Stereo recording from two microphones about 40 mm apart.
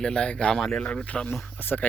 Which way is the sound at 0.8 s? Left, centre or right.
Left.